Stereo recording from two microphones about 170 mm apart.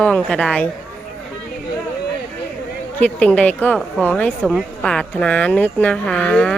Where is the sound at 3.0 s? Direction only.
5° left (ahead or behind).